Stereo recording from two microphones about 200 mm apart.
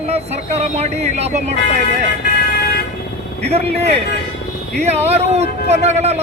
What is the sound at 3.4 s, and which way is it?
Speech, 30° right (ahead or behind).